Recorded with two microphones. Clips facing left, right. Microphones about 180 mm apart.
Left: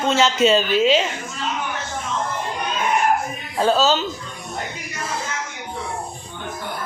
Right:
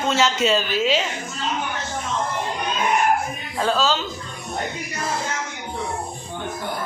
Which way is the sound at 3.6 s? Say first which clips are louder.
Left 4 dB; 25° left (ahead or behind).